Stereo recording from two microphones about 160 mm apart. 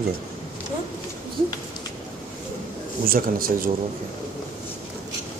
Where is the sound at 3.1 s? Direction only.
65° right (ahead or behind).